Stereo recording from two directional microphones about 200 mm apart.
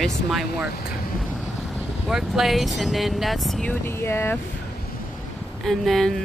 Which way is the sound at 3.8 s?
10° left (ahead or behind).